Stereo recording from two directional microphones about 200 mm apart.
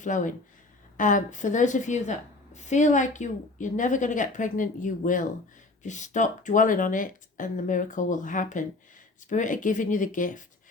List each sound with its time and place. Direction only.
0.0 s a woman's voice: 40° left (ahead or behind)